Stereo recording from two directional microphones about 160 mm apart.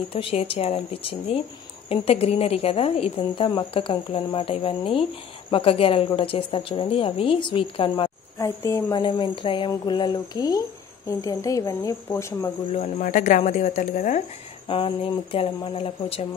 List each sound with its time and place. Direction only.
0.1 s a woman's voice: 35° left (ahead or behind)
8.5 s speech: 20° left (ahead or behind)
12.7 s speech: 55° left (ahead or behind)
14.7 s a woman's voice: 35° left (ahead or behind)